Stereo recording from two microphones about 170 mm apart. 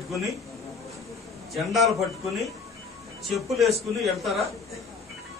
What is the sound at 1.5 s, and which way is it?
Speech, centre (ahead or behind).